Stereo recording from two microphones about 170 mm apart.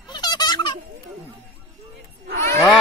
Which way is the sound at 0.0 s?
25° left (ahead or behind).